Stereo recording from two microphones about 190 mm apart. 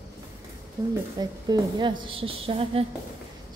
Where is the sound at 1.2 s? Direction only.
25° right (ahead or behind).